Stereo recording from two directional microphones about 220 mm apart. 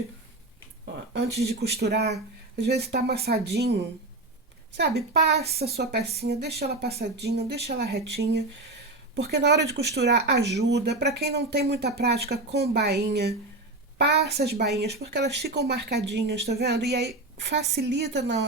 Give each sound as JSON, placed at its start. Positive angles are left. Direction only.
{"t": 1.1, "sound": "speech", "side_deg": -45}